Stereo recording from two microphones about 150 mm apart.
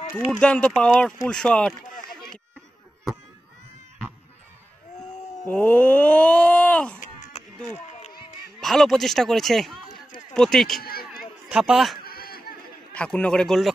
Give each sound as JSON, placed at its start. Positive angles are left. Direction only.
{"t": 0.3, "sound": "speech", "side_deg": 5}
{"t": 5.4, "sound": "groan", "side_deg": 10}
{"t": 7.0, "sound": "a sound", "side_deg": 55}
{"t": 8.5, "sound": "speech", "side_deg": 0}
{"t": 10.8, "sound": "run", "side_deg": 90}
{"t": 11.5, "sound": "speech", "side_deg": -5}
{"t": 12.0, "sound": "a sound", "side_deg": 85}
{"t": 12.9, "sound": "speech", "side_deg": 10}